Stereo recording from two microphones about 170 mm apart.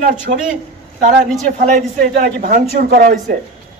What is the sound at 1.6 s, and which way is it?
A man's voice, 45° right (ahead or behind).